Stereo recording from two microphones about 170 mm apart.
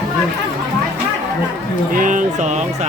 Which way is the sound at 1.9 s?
50° right (ahead or behind).